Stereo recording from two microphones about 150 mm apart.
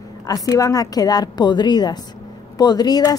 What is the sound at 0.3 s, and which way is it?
A woman's voice, 25° left (ahead or behind).